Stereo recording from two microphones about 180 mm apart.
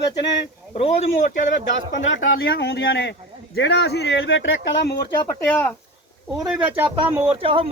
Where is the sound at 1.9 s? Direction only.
90° left.